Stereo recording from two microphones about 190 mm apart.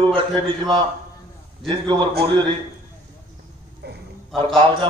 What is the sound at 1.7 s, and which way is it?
Speech, 25° right (ahead or behind).